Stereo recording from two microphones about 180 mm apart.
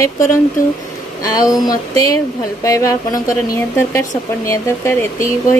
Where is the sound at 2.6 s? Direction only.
20° left (ahead or behind).